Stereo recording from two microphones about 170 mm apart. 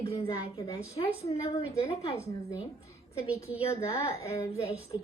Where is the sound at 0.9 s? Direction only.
35° left (ahead or behind).